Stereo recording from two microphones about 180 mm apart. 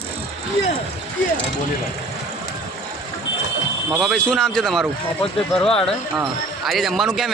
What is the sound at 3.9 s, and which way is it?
A man's voice, centre (ahead or behind).